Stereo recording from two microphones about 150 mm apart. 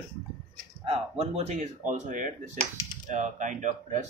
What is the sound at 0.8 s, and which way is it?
Speech, 40° right (ahead or behind).